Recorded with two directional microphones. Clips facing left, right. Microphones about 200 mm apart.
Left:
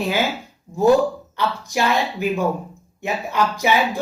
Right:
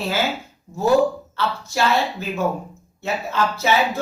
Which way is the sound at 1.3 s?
15° left (ahead or behind).